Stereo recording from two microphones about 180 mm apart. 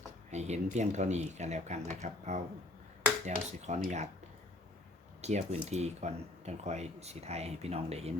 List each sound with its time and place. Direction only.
0.3 s speech: 40° right (ahead or behind)
5.2 s speech: 40° right (ahead or behind)